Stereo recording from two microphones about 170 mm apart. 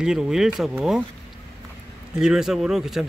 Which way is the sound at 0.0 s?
5° right (ahead or behind).